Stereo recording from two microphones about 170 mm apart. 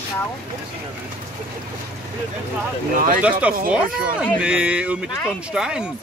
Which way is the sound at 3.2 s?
10° right (ahead or behind).